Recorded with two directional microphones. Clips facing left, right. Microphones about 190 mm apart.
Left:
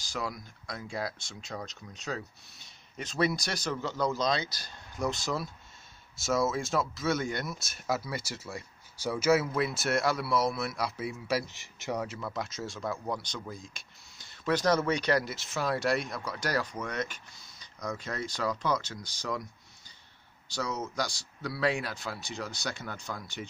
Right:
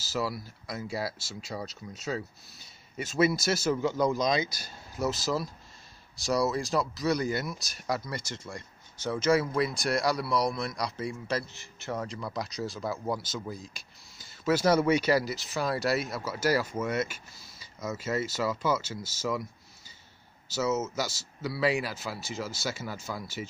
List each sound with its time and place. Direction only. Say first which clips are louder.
0.0 s speech: right 4 dB; 5° right (ahead or behind)
11.4 s speech: left 1 dB; 15° left (ahead or behind); by 19.4 s 5° right (ahead or behind)
20.4 s speech: right 6 dB; 5° right (ahead or behind)